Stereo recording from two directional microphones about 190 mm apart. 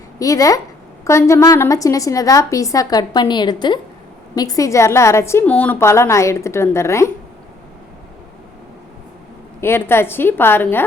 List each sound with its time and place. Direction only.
0.2 s a woman's voice: 20° left (ahead or behind)
9.6 s a woman's voice: 10° left (ahead or behind)